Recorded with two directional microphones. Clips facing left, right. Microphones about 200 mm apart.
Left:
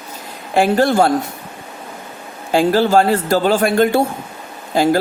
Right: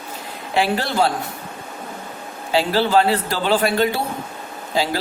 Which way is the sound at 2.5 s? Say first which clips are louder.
Left 5 dB; 50° left (ahead or behind).